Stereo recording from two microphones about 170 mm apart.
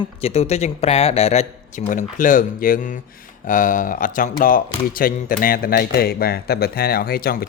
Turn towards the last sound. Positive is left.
turn(degrees=65)  # may be behind; listen again after turning